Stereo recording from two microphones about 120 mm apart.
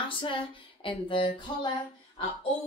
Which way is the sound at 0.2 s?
45° left (ahead or behind).